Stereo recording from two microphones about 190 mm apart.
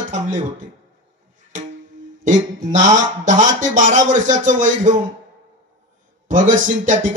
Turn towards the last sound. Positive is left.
turn(degrees=-40)  # may be behind; listen again after turning